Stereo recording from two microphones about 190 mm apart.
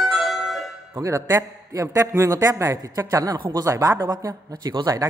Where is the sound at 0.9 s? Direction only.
15° right (ahead or behind).